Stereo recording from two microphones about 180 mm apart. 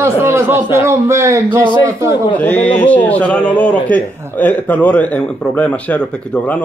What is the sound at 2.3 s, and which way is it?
A man's voice, 10° left (ahead or behind).